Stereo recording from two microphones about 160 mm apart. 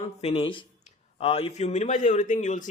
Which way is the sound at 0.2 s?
35° left (ahead or behind).